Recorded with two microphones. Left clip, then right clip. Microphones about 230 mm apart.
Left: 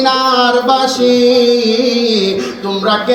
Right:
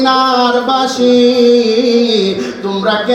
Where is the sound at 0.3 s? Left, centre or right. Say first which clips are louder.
Left 1 dB; left.